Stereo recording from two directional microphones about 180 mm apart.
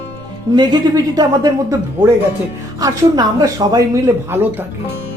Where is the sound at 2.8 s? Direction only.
20° right (ahead or behind).